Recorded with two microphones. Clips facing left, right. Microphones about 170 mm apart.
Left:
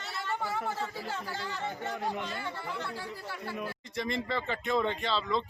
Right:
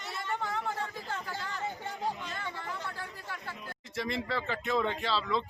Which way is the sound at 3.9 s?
5° right (ahead or behind).